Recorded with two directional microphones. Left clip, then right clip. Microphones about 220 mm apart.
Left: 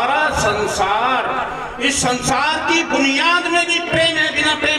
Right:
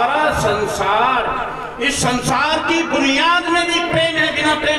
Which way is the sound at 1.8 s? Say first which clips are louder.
Even; 30° left (ahead or behind).